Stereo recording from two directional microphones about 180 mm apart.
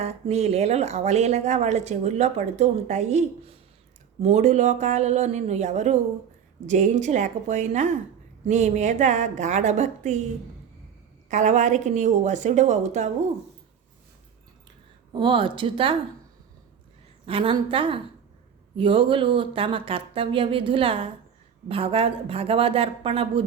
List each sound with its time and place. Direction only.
0.0 s speech: 35° right (ahead or behind)
11.3 s speech: 40° right (ahead or behind)
15.1 s speech: 25° right (ahead or behind)
17.2 s speech: 30° right (ahead or behind)